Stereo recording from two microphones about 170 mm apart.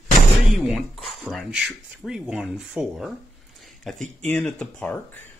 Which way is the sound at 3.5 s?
Centre (ahead or behind).